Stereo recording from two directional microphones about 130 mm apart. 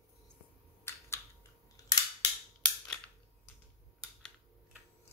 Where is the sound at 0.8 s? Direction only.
20° left (ahead or behind).